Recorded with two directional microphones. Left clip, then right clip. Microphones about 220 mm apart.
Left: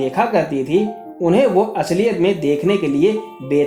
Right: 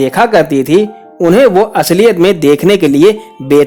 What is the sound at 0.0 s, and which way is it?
Speech, 50° right (ahead or behind).